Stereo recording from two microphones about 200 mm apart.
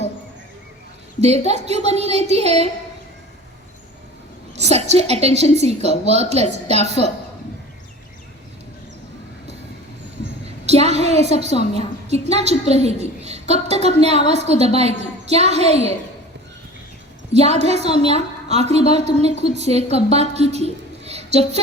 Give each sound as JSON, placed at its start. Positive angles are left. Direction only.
{"t": 1.2, "sound": "a woman's voice", "side_deg": -30}
{"t": 4.6, "sound": "a woman's voice", "side_deg": -30}
{"t": 10.7, "sound": "a woman's voice", "side_deg": -30}
{"t": 17.3, "sound": "a woman's voice", "side_deg": -30}